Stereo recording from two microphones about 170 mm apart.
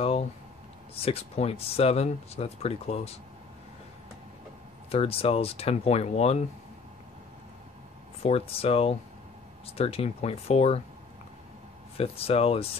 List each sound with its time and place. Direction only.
0.0 s a sound: 35° left (ahead or behind)
0.9 s speech: 35° left (ahead or behind)
4.9 s speech: 35° left (ahead or behind)
8.2 s speech: 35° left (ahead or behind)
12.0 s speech: 35° left (ahead or behind)